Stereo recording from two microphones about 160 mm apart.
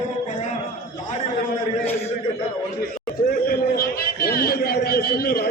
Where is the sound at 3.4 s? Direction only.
70° left (ahead or behind).